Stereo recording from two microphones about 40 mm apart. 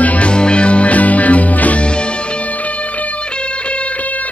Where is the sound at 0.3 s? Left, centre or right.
Left.